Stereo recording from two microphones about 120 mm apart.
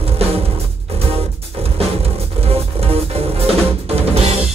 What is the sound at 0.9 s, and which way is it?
Music, 55° right (ahead or behind).